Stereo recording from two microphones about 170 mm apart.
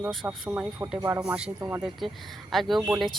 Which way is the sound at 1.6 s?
15° right (ahead or behind).